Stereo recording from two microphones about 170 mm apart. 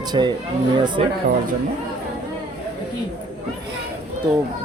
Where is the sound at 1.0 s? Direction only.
35° right (ahead or behind).